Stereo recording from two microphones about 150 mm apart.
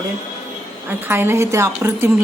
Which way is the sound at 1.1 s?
15° right (ahead or behind).